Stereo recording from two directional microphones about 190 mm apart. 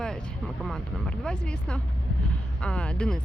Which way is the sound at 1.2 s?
5° left (ahead or behind).